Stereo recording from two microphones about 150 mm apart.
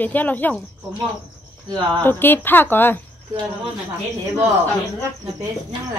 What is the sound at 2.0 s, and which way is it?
Speech, 15° left (ahead or behind).